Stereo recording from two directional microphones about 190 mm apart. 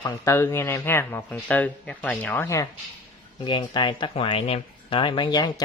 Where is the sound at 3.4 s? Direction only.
25° left (ahead or behind).